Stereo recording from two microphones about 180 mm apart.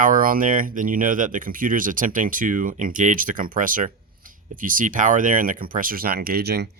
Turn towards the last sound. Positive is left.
turn(degrees=-60)  # may be behind; listen again after turning